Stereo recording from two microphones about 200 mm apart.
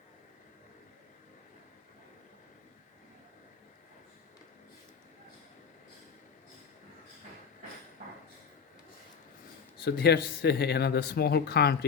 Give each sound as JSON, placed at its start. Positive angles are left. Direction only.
{"t": 9.8, "sound": "speech", "side_deg": 55}